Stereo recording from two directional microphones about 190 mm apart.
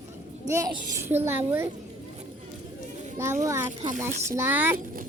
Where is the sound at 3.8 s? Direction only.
40° right (ahead or behind).